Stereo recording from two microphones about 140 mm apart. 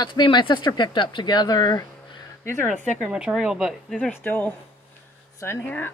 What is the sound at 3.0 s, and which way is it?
Speech, 5° right (ahead or behind).